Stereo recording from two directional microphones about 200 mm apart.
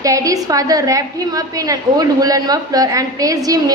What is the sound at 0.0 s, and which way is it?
A woman's voice, 15° right (ahead or behind).